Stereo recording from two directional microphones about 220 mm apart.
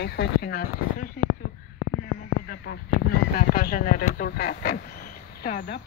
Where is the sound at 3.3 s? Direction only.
40° left (ahead or behind).